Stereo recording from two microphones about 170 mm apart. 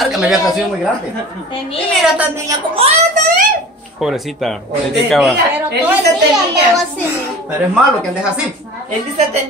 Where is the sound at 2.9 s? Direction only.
50° right (ahead or behind).